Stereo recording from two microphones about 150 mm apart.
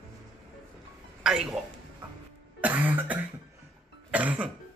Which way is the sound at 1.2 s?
5° right (ahead or behind).